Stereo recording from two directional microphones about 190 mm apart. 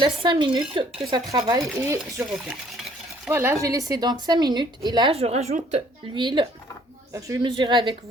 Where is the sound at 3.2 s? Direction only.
15° right (ahead or behind).